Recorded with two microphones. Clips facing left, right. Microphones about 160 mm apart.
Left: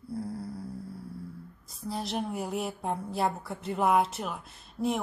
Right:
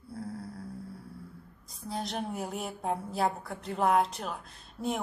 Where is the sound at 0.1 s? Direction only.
Centre (ahead or behind).